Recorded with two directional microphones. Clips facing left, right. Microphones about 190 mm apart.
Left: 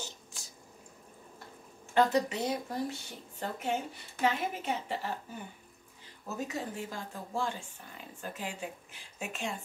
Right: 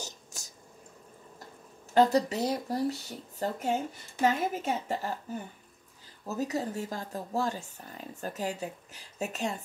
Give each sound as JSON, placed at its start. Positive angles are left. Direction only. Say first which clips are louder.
{"t": 0.0, "sound": "a sound", "louder": "right 2 dB", "side_deg": -45}
{"t": 2.0, "sound": "a woman's voice", "louder": "right 3 dB", "side_deg": -40}
{"t": 6.2, "sound": "speech", "louder": "right 5 dB", "side_deg": -40}